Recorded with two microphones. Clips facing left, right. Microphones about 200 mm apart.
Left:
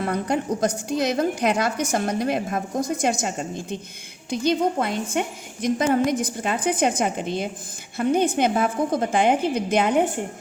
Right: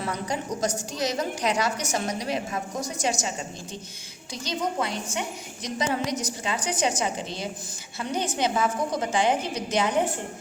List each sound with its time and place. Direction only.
0.0 s a woman's voice: 55° left (ahead or behind)